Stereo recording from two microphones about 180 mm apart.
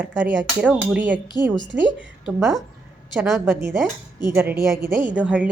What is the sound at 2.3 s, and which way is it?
A woman's voice, centre (ahead or behind).